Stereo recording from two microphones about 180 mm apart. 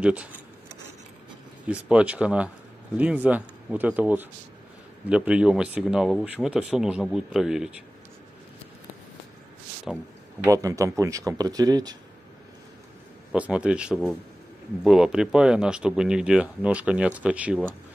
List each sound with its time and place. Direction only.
0.0 s speech: 5° right (ahead or behind)
1.7 s speech: 5° right (ahead or behind)
10.5 s speech: 20° right (ahead or behind)
13.3 s speech: 5° right (ahead or behind)